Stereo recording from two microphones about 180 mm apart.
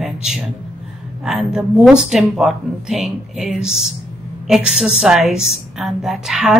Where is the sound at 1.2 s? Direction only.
5° right (ahead or behind).